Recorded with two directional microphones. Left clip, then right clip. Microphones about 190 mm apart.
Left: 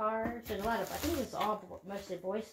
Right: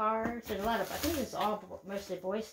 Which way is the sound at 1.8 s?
20° right (ahead or behind).